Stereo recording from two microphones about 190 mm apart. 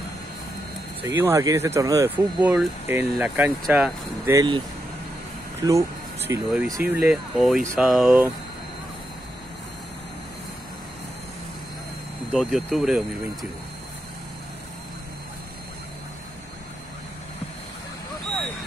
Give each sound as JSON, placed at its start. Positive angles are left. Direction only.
{"t": 1.0, "sound": "speech", "side_deg": -15}
{"t": 4.4, "sound": "speech", "side_deg": -25}
{"t": 5.7, "sound": "speech", "side_deg": -15}
{"t": 12.3, "sound": "speech", "side_deg": 0}